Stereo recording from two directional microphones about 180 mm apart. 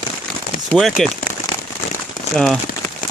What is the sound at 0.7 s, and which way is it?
Speech, centre (ahead or behind).